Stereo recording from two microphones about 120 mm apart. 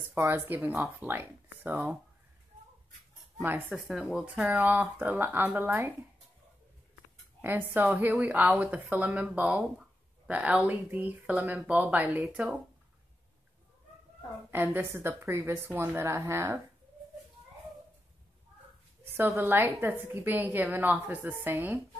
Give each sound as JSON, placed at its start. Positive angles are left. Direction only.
{"t": 0.1, "sound": "speech", "side_deg": -15}
{"t": 3.3, "sound": "speech", "side_deg": -15}
{"t": 3.8, "sound": "speech", "side_deg": -5}
{"t": 7.4, "sound": "speech", "side_deg": -15}
{"t": 14.5, "sound": "speech", "side_deg": -20}
{"t": 19.1, "sound": "speech", "side_deg": -20}